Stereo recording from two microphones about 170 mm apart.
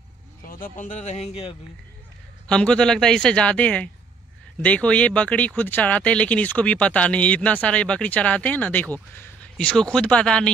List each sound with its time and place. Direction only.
0.4 s speech: 55° left (ahead or behind); by 1.6 s 35° left (ahead or behind)
2.4 s speech: 5° left (ahead or behind)